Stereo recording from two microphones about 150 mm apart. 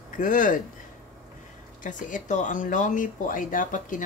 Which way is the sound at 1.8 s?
55° left (ahead or behind).